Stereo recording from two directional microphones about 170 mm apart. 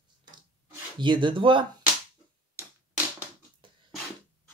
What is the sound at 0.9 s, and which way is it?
Speech, 25° right (ahead or behind).